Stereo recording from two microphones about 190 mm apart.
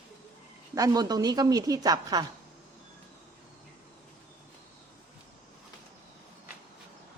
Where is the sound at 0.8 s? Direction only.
20° right (ahead or behind).